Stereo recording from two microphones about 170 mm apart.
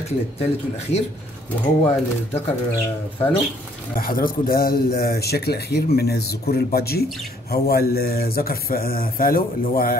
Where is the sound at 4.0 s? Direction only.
55° left (ahead or behind).